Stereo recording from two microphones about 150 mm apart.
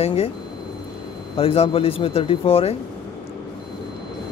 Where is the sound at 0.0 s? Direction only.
40° left (ahead or behind).